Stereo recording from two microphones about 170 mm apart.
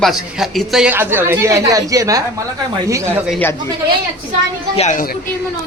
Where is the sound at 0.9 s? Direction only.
15° right (ahead or behind).